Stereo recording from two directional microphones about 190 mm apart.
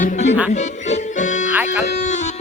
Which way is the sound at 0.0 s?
40° left (ahead or behind).